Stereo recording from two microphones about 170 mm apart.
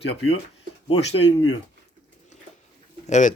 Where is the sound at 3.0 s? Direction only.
45° left (ahead or behind).